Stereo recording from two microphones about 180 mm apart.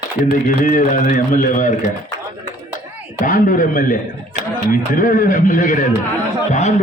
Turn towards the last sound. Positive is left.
turn(degrees=40)  # may be behind; listen again after turning